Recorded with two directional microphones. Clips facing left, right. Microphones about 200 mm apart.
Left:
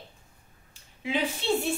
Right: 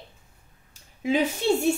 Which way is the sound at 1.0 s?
45° right (ahead or behind).